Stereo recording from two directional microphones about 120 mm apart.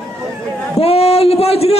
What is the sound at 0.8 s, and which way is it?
Speech, 55° left (ahead or behind).